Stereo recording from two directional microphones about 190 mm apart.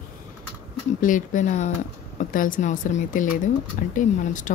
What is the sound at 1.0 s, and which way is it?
A woman's voice, 45° left (ahead or behind).